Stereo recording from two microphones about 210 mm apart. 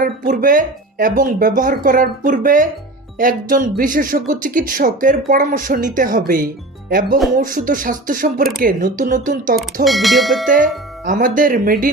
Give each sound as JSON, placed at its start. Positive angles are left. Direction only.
{"t": 0.0, "sound": "speech", "side_deg": -40}
{"t": 9.8, "sound": "speech", "side_deg": 0}
{"t": 10.4, "sound": "speech", "side_deg": -40}